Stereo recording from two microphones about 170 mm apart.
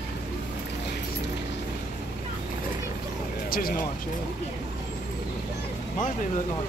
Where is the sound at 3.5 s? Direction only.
60° left (ahead or behind).